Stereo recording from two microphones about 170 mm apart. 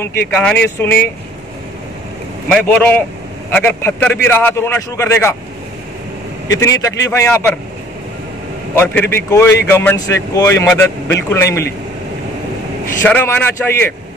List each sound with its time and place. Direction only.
0.0 s a man's voice: 10° left (ahead or behind)
2.4 s a man's voice: 10° left (ahead or behind)
6.6 s a man's voice: 20° left (ahead or behind)
8.7 s a man's voice: 10° left (ahead or behind)
13.0 s a man's voice: 10° left (ahead or behind)